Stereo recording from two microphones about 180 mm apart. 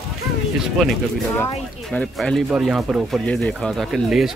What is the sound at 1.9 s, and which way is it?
Speech, 5° left (ahead or behind).